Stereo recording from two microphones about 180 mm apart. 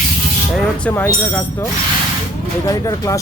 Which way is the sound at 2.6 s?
20° left (ahead or behind).